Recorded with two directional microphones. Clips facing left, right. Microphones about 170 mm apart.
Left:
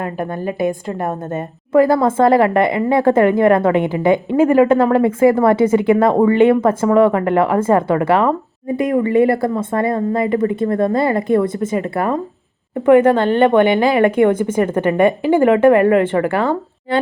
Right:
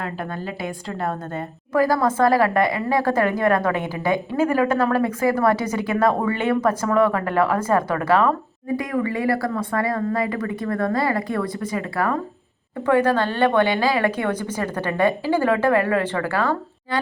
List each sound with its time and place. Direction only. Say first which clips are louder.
0.2 s a woman's voice: left 9 dB; 20° left (ahead or behind)